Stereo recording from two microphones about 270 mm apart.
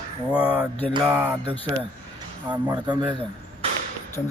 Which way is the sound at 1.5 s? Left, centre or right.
Centre.